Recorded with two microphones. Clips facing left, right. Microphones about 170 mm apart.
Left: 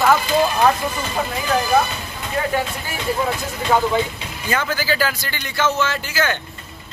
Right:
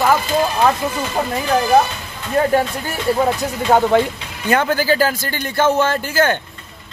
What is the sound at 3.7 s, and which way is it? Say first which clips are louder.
Speech: right 4 dB; 40° right (ahead or behind).